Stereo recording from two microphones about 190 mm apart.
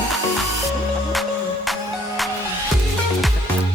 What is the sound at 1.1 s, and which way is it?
Music, centre (ahead or behind).